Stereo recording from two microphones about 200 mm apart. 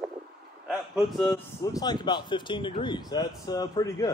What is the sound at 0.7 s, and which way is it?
Speech, 5° right (ahead or behind).